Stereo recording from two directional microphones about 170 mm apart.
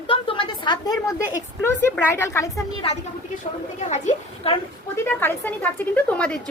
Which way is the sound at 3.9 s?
45° left (ahead or behind).